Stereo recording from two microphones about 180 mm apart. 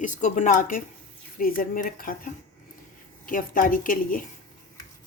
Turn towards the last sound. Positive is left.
turn(degrees=50)  # may be behind; listen again after turning